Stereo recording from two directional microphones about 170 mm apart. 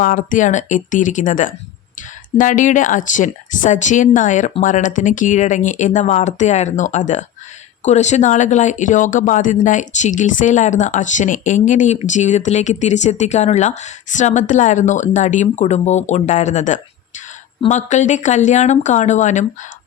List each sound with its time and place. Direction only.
0.0 s speech: 50° left (ahead or behind)